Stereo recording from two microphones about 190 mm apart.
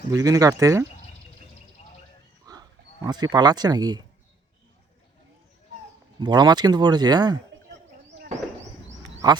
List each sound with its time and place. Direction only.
0.1 s speech: 20° right (ahead or behind)
2.5 s speech: 20° right (ahead or behind)
6.1 s speech: 20° right (ahead or behind)